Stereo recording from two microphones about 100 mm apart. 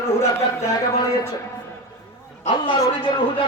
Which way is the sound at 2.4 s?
60° left (ahead or behind).